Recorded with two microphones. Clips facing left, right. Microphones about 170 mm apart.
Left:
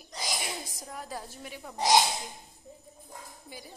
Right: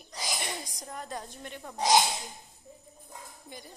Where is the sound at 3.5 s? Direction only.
5° left (ahead or behind).